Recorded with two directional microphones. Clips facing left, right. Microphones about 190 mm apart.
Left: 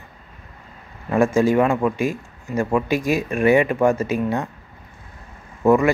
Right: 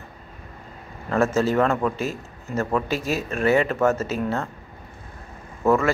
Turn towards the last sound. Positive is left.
turn(degrees=15)  # may be behind; listen again after turning